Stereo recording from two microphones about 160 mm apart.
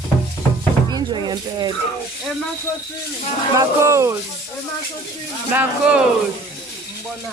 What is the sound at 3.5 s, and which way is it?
Speech, 20° right (ahead or behind).